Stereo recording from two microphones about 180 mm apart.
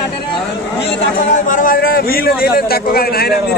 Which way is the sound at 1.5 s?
50° left (ahead or behind).